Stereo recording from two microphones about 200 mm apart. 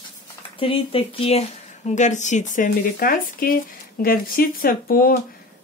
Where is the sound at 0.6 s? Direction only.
25° left (ahead or behind).